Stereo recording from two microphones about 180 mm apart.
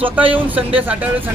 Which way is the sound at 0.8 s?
10° right (ahead or behind).